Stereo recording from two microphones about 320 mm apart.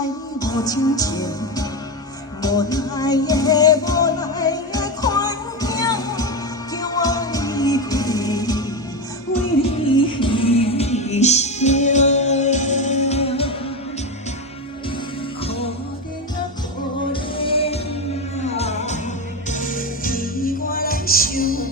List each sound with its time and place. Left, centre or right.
0.3 s music: centre
9.6 s music: centre
15.4 s music: centre
17.1 s music: centre